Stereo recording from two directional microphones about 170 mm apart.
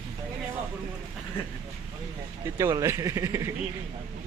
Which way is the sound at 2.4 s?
15° right (ahead or behind).